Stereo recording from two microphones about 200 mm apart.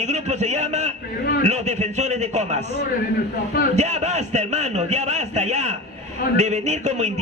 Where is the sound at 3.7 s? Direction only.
35° right (ahead or behind).